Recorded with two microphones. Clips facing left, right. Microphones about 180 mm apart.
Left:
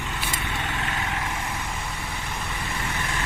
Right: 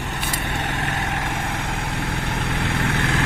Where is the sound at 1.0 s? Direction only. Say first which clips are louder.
Right 4 dB; 70° right (ahead or behind).